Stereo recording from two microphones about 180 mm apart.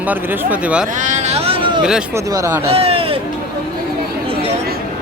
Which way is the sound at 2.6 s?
35° right (ahead or behind).